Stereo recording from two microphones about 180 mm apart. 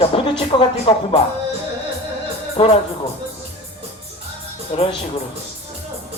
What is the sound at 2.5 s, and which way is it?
Speech, 30° left (ahead or behind).